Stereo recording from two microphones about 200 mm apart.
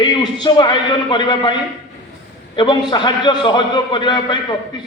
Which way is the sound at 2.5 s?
20° left (ahead or behind).